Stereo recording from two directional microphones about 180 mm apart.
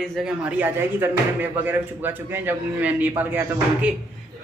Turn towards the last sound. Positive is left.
turn(degrees=-10)  # may be behind; listen again after turning